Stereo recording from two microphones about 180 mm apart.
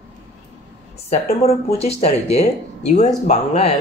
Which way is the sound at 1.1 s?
35° left (ahead or behind).